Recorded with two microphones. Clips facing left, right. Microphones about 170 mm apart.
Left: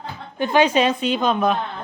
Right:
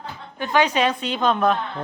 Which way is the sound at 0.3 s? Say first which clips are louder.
Left 3 dB; 20° left (ahead or behind).